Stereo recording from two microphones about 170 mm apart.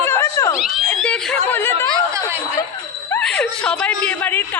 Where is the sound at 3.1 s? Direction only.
5° left (ahead or behind).